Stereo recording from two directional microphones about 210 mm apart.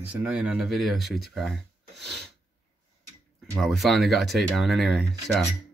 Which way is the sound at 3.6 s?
Centre (ahead or behind).